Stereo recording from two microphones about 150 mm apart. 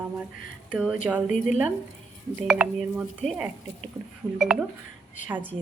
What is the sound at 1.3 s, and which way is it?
Speech, 55° left (ahead or behind).